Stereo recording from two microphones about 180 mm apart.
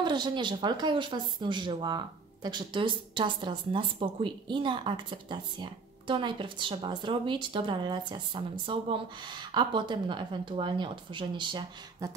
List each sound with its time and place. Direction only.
0.0 s speech: 25° right (ahead or behind)